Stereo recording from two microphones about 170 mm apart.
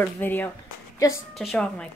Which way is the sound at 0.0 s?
10° left (ahead or behind).